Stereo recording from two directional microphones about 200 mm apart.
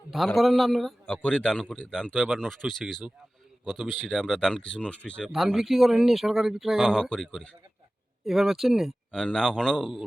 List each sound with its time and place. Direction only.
0.3 s speech: centre (ahead or behind)